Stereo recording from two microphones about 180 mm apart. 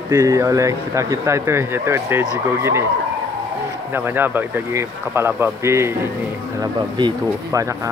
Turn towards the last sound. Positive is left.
turn(degrees=-15)  # may be behind; listen again after turning